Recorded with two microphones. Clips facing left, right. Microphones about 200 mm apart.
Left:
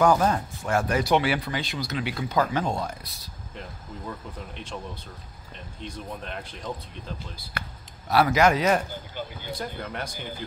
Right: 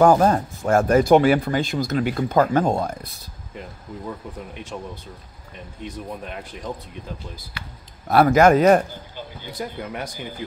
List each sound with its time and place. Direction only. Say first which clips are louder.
0.0 s speech: right 5 dB; 45° right (ahead or behind)
5.8 s speech: right 4 dB; 10° right (ahead or behind)
7.6 s speech: left 6 dB; 50° left (ahead or behind)
8.1 s speech: right 6 dB; 50° right (ahead or behind)
9.6 s speech: right 5 dB; 10° right (ahead or behind)